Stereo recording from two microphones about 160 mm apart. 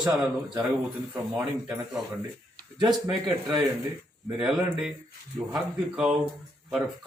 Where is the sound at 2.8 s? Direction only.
25° right (ahead or behind).